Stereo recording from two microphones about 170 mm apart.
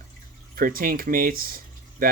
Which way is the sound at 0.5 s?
55° right (ahead or behind).